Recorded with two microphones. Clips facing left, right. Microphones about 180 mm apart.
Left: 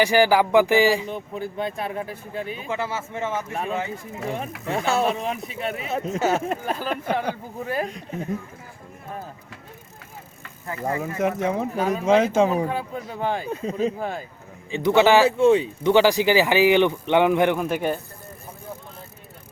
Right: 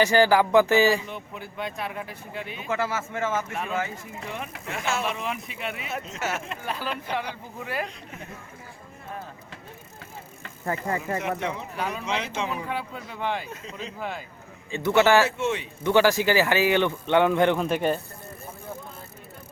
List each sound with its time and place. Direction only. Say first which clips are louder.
0.0 s a man's voice: left 1 dB; 15° left (ahead or behind)
1.1 s speech: left 7 dB; 40° left (ahead or behind)
2.6 s a man's voice: even; 15° left (ahead or behind)
4.7 s speech: left 7 dB; 35° left (ahead or behind)
6.5 s speech: left 5 dB; 45° left (ahead or behind)
11.2 s speech: left 7 dB; 45° left (ahead or behind)
14.7 s a man's voice: left 3 dB; 15° left (ahead or behind)
15.4 s speech: left 11 dB; 35° left (ahead or behind)
15.8 s a man's voice: left 3 dB; 15° left (ahead or behind)